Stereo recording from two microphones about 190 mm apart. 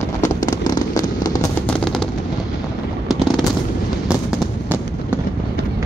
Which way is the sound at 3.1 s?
Centre (ahead or behind).